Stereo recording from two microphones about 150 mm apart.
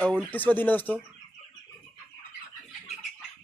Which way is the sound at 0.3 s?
10° left (ahead or behind).